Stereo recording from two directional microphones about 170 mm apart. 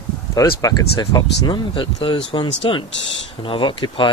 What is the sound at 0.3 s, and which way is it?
Speech, 20° left (ahead or behind).